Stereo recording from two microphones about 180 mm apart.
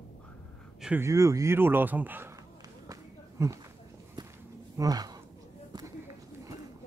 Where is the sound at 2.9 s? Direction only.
15° right (ahead or behind).